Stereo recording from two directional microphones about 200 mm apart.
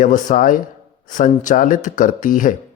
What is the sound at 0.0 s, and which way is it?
A man's voice, 40° left (ahead or behind).